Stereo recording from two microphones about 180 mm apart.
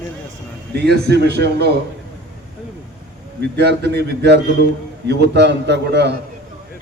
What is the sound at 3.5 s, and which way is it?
A man's voice, 65° right (ahead or behind).